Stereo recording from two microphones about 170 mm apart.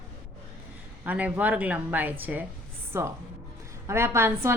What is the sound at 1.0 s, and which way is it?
A woman's voice, 10° right (ahead or behind).